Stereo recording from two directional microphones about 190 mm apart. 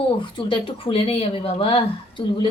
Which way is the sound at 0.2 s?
25° left (ahead or behind).